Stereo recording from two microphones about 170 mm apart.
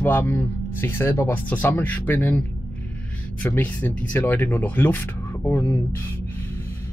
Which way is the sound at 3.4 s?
10° left (ahead or behind).